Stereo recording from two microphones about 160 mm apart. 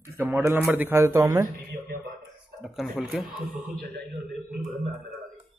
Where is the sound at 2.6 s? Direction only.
Centre (ahead or behind).